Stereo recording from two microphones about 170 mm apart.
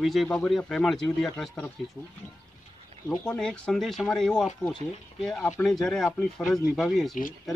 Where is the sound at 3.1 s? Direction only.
5° left (ahead or behind).